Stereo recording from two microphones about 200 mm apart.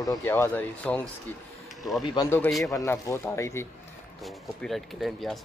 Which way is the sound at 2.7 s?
15° left (ahead or behind).